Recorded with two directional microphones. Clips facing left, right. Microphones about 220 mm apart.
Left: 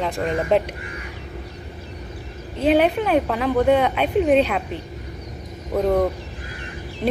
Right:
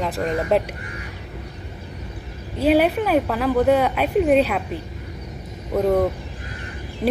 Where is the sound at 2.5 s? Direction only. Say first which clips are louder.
Even; 5° right (ahead or behind).